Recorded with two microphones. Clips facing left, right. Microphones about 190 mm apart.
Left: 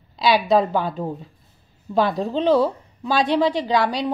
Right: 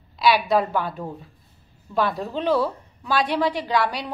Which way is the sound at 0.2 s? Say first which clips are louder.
Left 2 dB; 20° left (ahead or behind).